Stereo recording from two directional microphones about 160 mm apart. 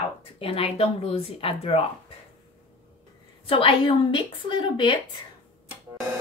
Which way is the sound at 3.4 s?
35° left (ahead or behind).